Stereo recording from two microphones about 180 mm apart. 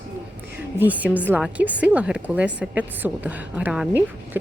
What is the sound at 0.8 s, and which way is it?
A woman's voice, 10° right (ahead or behind).